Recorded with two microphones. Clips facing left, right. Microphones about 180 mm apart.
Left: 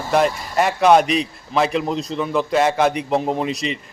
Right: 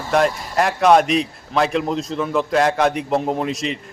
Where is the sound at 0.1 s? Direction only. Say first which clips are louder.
Even; centre (ahead or behind).